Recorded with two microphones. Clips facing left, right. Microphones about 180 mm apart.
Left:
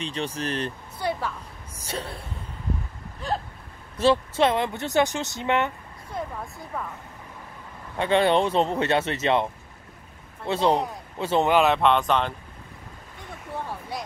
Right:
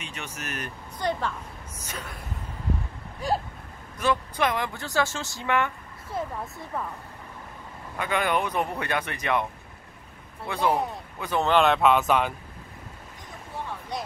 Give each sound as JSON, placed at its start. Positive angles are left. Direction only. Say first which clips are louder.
{"t": 0.0, "sound": "speech", "louder": "left 9 dB", "side_deg": 30}
{"t": 0.9, "sound": "a woman's voice", "louder": "right 1 dB", "side_deg": 10}
{"t": 1.9, "sound": "speech", "louder": "left 6 dB", "side_deg": 30}
{"t": 3.2, "sound": "a sound", "louder": "right 2 dB", "side_deg": -10}
{"t": 4.0, "sound": "speech", "louder": "left 5 dB", "side_deg": 25}
{"t": 6.1, "sound": "speech", "louder": "right 1 dB", "side_deg": -5}
{"t": 8.0, "sound": "speech", "louder": "left 6 dB", "side_deg": 30}
{"t": 11.4, "sound": "speech", "louder": "right 1 dB", "side_deg": 5}
{"t": 13.9, "sound": "a sound", "louder": "right 1 dB", "side_deg": 5}